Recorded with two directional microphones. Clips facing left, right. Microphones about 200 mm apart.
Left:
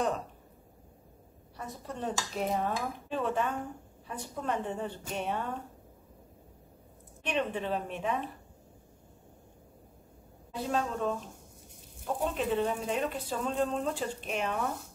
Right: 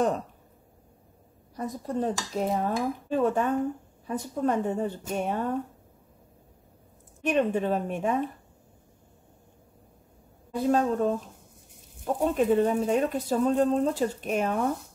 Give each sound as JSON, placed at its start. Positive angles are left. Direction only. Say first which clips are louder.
{"t": 1.6, "sound": "speech", "louder": "right 9 dB", "side_deg": -40}
{"t": 7.2, "sound": "speech", "louder": "right 7 dB", "side_deg": -45}
{"t": 10.5, "sound": "speech", "louder": "right 8 dB", "side_deg": -45}
{"t": 12.4, "sound": "speech", "louder": "right 9 dB", "side_deg": -45}